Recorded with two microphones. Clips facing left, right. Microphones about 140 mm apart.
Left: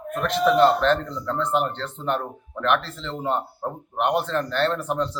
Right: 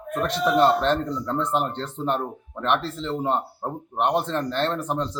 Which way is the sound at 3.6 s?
20° right (ahead or behind).